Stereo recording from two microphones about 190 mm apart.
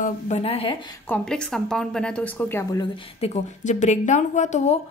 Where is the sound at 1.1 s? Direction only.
5° left (ahead or behind).